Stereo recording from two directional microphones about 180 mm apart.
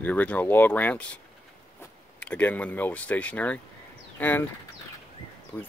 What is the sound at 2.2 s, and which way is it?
Speech, 5° left (ahead or behind).